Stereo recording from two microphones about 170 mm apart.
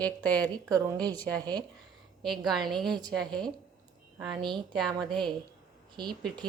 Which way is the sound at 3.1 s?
5° left (ahead or behind).